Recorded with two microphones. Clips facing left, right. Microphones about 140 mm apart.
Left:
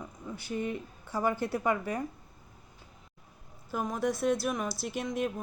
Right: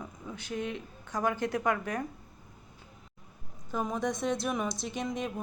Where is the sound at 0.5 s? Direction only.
75° right (ahead or behind).